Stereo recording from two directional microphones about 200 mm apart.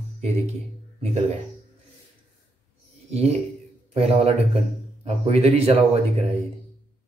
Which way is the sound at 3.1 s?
30° right (ahead or behind).